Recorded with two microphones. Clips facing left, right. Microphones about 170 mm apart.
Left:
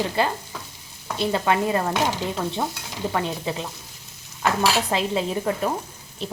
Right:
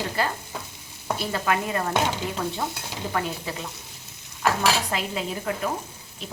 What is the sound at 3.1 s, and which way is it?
Frying, 25° left (ahead or behind).